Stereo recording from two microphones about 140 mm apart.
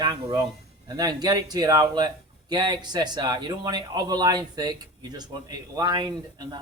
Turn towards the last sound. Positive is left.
turn(degrees=-30)  # may be behind; listen again after turning